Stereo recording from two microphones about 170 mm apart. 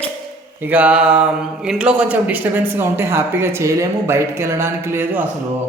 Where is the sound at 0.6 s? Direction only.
10° right (ahead or behind).